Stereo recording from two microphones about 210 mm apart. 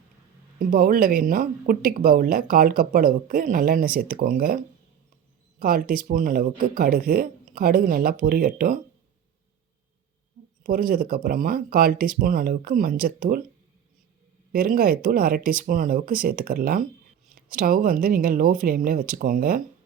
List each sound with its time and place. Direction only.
0.6 s speech: 40° right (ahead or behind)
10.6 s speech: 40° right (ahead or behind)
14.5 s speech: 45° right (ahead or behind)